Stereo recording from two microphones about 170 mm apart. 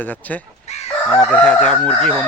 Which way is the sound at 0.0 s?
10° left (ahead or behind).